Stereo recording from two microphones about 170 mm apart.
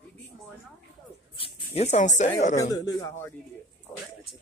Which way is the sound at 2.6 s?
20° left (ahead or behind).